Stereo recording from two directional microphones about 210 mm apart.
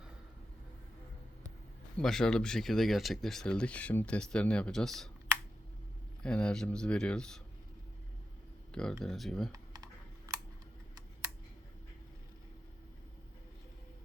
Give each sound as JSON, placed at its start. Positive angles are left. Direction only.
{"t": 2.0, "sound": "speech", "side_deg": 5}
{"t": 6.2, "sound": "speech", "side_deg": 5}
{"t": 8.7, "sound": "speech", "side_deg": 5}
{"t": 9.5, "sound": "computer keyboard", "side_deg": -15}